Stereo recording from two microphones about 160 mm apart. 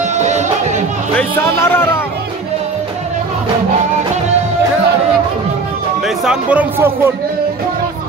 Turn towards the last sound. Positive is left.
turn(degrees=-15)  # may be behind; listen again after turning